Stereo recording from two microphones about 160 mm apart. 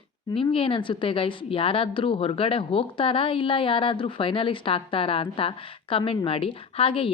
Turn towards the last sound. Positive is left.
turn(degrees=35)  # may be behind; listen again after turning